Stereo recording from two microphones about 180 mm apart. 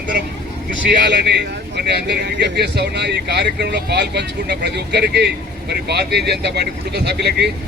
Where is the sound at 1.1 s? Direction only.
70° right (ahead or behind).